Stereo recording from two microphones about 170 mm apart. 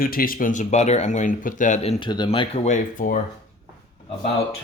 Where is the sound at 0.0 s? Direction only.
60° left (ahead or behind).